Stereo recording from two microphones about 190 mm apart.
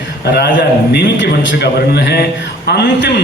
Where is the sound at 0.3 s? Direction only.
60° left (ahead or behind).